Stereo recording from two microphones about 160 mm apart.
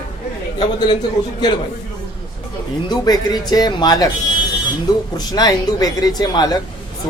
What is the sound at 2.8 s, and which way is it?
A man's voice, 25° left (ahead or behind).